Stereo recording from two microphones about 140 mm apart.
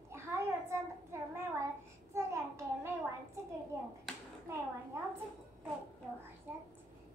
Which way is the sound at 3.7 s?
20° right (ahead or behind).